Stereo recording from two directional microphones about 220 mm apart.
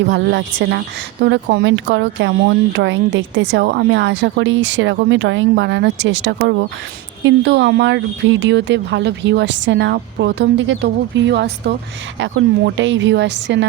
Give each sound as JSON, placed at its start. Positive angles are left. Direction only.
{"t": 0.1, "sound": "speech", "side_deg": -50}